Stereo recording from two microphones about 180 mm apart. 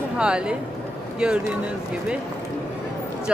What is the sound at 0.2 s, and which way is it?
Speech, 5° right (ahead or behind).